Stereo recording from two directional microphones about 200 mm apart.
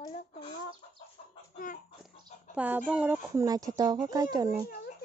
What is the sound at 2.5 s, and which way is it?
Speech, 10° right (ahead or behind).